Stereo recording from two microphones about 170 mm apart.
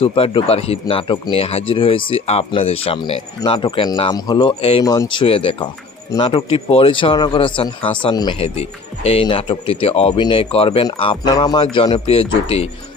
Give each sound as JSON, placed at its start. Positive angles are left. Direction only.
{"t": 0.0, "sound": "speech", "side_deg": 30}
{"t": 8.4, "sound": "speech", "side_deg": 40}